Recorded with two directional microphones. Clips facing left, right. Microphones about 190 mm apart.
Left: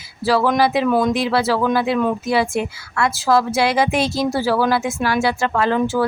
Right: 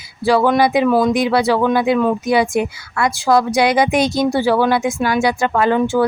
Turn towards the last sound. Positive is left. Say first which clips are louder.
# right 3 dB
turn(degrees=0)  # may be behind; listen again after turning